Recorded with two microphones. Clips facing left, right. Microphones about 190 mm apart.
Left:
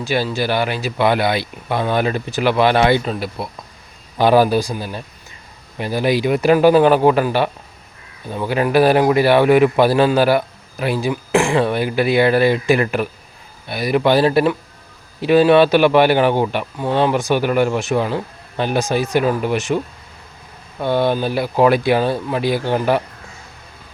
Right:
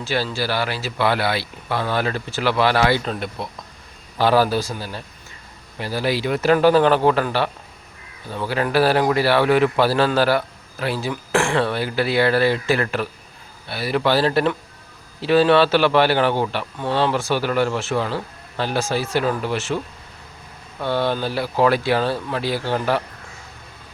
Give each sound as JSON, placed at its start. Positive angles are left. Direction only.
{"t": 0.0, "sound": "a man's voice", "side_deg": 15}
{"t": 3.0, "sound": "a man's voice", "side_deg": 5}